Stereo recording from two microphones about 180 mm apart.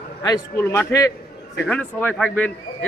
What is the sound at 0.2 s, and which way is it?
A man's voice, 20° left (ahead or behind).